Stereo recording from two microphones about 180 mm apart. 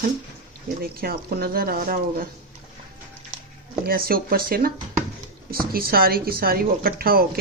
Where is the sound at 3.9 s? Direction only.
55° right (ahead or behind).